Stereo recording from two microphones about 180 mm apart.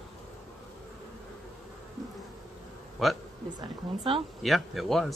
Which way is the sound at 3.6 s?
25° right (ahead or behind).